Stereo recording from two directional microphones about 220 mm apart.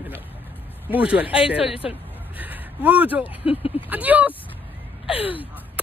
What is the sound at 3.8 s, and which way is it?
Speech, 5° right (ahead or behind).